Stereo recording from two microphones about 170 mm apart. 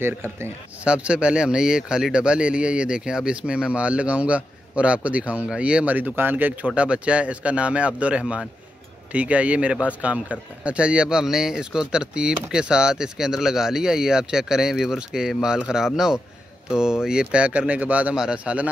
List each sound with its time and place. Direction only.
0.0 s speech: 15° right (ahead or behind)